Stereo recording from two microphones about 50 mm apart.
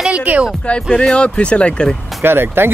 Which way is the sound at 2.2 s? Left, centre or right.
Right.